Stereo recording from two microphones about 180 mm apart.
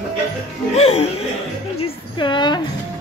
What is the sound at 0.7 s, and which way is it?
Music, 35° left (ahead or behind).